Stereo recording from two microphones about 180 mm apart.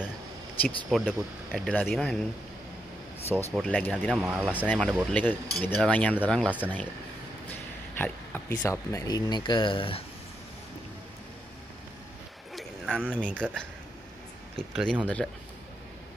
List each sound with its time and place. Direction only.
0.6 s speech: centre (ahead or behind)
3.3 s speech: centre (ahead or behind)
4.5 s speech: 10° left (ahead or behind)
8.0 s speech: 10° left (ahead or behind); by 10.0 s 30° left (ahead or behind)
12.5 s a sound: centre (ahead or behind)
13.1 s speech: 5° left (ahead or behind)
14.8 s speech: centre (ahead or behind)